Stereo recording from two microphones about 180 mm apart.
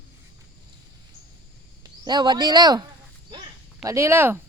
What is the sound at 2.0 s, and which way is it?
Speech, 25° right (ahead or behind).